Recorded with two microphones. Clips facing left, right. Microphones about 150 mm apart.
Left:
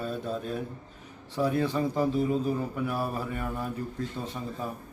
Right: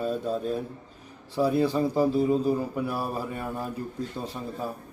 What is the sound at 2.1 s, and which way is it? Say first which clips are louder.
Speech: right 3 dB; 35° right (ahead or behind).